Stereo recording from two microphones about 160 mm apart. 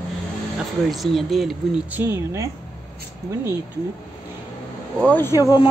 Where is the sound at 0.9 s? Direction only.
Centre (ahead or behind); by 2.4 s 15° right (ahead or behind).